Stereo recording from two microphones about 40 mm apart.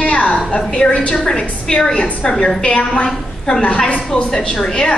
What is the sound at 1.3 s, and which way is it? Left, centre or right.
A woman's voice, centre.